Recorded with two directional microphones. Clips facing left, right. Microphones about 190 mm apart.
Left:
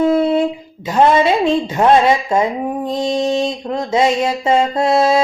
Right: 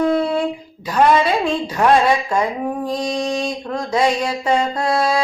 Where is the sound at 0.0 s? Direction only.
25° left (ahead or behind).